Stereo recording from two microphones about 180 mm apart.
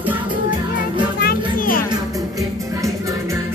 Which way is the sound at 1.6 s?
50° left (ahead or behind).